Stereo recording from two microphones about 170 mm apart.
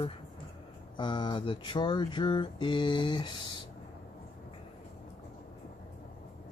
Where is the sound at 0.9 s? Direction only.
30° left (ahead or behind).